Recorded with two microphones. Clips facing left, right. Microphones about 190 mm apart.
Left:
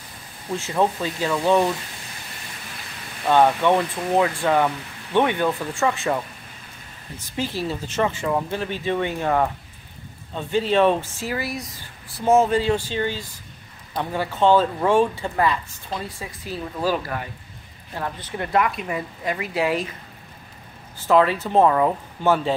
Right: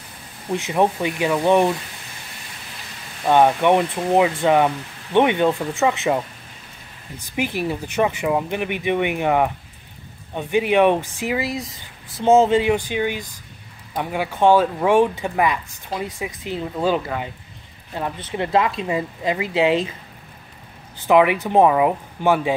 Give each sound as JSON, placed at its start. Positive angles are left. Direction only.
{"t": 0.5, "sound": "speech", "side_deg": -15}
{"t": 3.3, "sound": "speech", "side_deg": -15}
{"t": 7.3, "sound": "speech", "side_deg": -15}
{"t": 21.1, "sound": "speech", "side_deg": -15}